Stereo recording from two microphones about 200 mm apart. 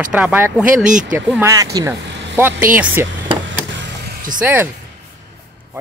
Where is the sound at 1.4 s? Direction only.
15° right (ahead or behind).